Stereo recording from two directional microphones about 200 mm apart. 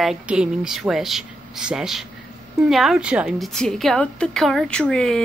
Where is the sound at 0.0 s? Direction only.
5° right (ahead or behind).